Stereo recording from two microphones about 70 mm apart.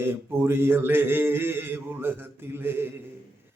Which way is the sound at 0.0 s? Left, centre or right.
Right.